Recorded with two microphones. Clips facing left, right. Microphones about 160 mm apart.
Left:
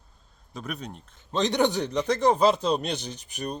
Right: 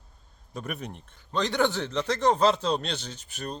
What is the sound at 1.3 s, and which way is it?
Speech, 20° left (ahead or behind).